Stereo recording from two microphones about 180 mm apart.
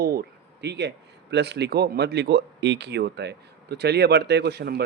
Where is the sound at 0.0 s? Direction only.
60° right (ahead or behind).